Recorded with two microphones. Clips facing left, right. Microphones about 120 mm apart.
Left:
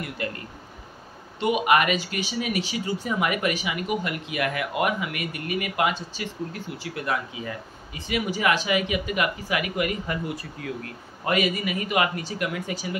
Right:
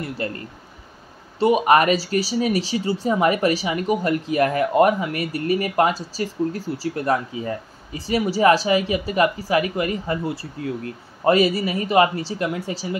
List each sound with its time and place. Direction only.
0.2 s speech: 35° right (ahead or behind)
1.4 s speech: 35° right (ahead or behind)